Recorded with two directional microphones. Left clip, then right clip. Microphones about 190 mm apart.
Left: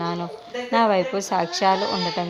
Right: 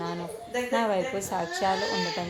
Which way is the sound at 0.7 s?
15° left (ahead or behind).